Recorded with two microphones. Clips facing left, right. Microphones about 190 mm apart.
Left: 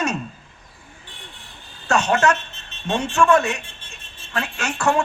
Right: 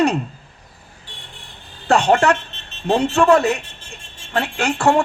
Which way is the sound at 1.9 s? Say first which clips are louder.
Right 4 dB; 30° right (ahead or behind).